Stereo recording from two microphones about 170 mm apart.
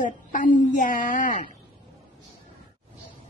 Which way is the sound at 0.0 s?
50° left (ahead or behind).